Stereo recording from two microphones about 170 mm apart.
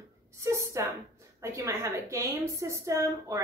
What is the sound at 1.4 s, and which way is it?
A woman's voice, 15° right (ahead or behind).